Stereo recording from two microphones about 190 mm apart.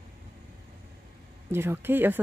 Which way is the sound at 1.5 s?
10° right (ahead or behind).